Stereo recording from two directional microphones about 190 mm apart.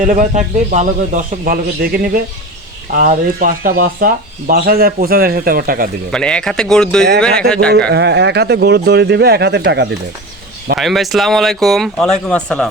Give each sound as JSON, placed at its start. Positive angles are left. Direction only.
{"t": 0.0, "sound": "speech", "side_deg": -40}
{"t": 6.1, "sound": "speech", "side_deg": 5}
{"t": 7.9, "sound": "speech", "side_deg": -65}
{"t": 10.8, "sound": "speech", "side_deg": 0}